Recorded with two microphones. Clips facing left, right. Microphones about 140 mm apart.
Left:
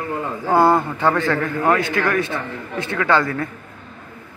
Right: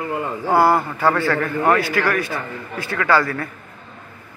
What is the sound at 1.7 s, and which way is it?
A man's voice, 20° left (ahead or behind).